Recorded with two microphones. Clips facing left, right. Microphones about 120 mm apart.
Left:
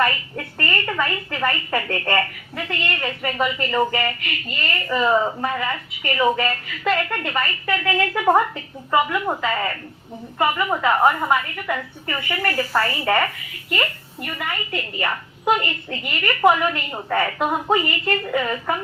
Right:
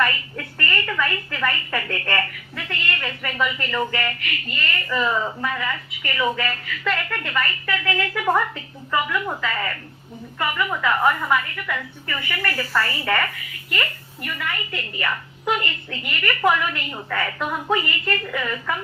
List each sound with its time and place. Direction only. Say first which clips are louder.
0.0 s a woman's voice: left 2 dB; 30° left (ahead or behind)
14.3 s a woman's voice: left 1 dB; 30° left (ahead or behind)
15.9 s a woman's voice: left 2 dB; 25° left (ahead or behind)